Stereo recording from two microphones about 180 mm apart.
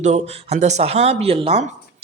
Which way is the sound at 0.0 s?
40° right (ahead or behind).